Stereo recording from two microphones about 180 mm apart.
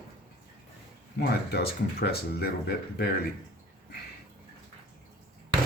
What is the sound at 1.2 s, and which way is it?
Speech, 65° left (ahead or behind).